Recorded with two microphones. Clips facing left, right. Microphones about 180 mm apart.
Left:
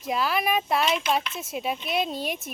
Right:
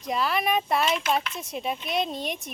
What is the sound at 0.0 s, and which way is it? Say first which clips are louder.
Speech: even; centre (ahead or behind).